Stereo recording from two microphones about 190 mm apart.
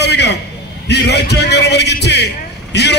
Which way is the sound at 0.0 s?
60° left (ahead or behind).